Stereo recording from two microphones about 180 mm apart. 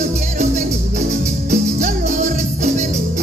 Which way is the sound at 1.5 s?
45° right (ahead or behind).